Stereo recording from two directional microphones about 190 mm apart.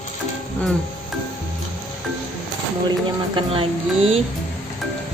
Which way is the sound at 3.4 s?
30° right (ahead or behind).